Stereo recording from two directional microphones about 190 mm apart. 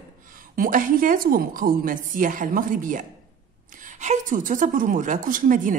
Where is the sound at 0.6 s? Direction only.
45° right (ahead or behind).